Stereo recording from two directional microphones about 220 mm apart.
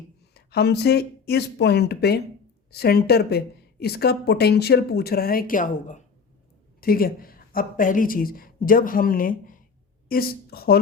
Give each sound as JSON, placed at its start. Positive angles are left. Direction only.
{"t": 0.3, "sound": "a woman's voice", "side_deg": 50}